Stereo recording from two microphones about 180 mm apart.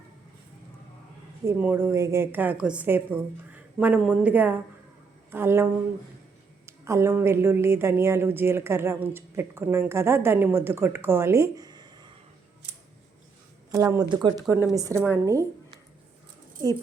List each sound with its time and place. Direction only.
1.5 s speech: 10° right (ahead or behind)
6.7 s speech: 15° right (ahead or behind)
13.7 s speech: 15° right (ahead or behind)
14.1 s speech: 25° right (ahead or behind)